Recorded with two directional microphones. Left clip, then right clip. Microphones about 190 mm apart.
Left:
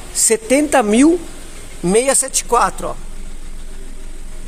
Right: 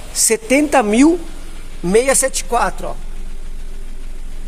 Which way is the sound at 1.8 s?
25° left (ahead or behind).